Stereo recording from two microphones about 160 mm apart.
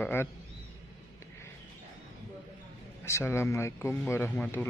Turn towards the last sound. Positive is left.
turn(degrees=10)  # may be behind; listen again after turning